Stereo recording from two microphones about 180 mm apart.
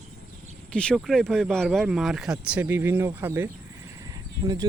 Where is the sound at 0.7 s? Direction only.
5° left (ahead or behind); by 3.4 s 15° right (ahead or behind).